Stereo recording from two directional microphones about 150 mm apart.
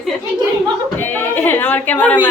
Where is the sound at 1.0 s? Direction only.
15° left (ahead or behind).